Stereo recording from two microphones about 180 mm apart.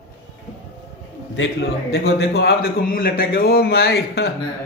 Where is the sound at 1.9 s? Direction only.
65° left (ahead or behind).